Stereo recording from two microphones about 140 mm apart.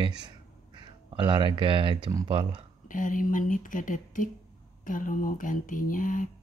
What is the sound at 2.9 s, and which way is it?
Speech, 70° left (ahead or behind).